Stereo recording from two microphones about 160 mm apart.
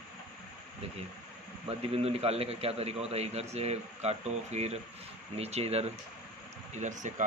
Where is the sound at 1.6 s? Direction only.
40° right (ahead or behind).